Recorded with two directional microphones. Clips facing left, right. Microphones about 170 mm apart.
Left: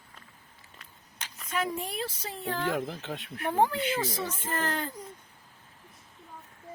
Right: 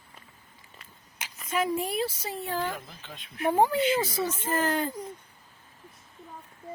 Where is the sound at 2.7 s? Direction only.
80° left.